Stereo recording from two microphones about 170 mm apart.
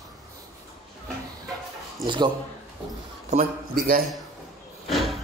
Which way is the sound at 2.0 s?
25° right (ahead or behind).